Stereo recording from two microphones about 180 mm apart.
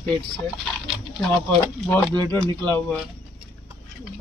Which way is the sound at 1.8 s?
10° left (ahead or behind).